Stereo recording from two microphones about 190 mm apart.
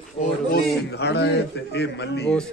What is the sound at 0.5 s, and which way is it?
A man's voice, 60° left (ahead or behind).